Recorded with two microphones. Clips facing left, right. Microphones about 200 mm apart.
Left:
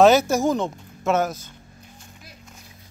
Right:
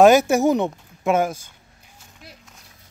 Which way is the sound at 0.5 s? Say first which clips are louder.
Right 3 dB; 15° right (ahead or behind).